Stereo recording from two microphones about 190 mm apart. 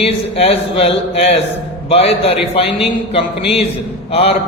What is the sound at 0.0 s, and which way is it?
A man's voice, 30° left (ahead or behind).